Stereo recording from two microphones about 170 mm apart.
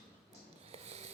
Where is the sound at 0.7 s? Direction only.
40° right (ahead or behind).